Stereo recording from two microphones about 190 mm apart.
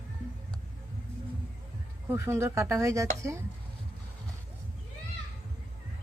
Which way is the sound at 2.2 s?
15° right (ahead or behind).